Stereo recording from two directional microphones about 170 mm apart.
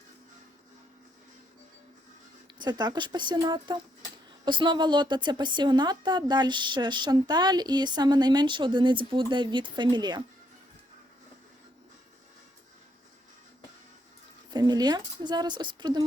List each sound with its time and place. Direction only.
2.6 s a woman's voice: 25° right (ahead or behind)
14.5 s a woman's voice: 25° right (ahead or behind)